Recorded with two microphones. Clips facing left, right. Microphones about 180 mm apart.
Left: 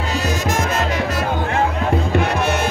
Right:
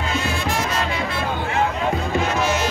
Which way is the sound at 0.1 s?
45° left (ahead or behind).